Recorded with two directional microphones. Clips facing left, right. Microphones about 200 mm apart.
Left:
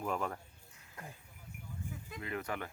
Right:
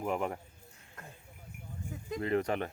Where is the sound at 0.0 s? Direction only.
20° right (ahead or behind).